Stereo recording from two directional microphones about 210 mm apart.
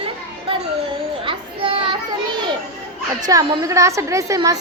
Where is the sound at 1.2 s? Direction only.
25° right (ahead or behind).